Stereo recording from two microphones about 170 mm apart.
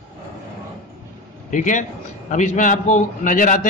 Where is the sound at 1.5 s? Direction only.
45° left (ahead or behind).